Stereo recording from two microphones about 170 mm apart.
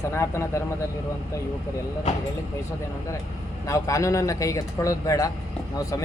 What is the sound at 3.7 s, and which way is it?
Speech, 20° left (ahead or behind).